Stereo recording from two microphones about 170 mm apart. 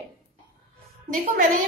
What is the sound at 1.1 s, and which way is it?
Speech, 50° right (ahead or behind).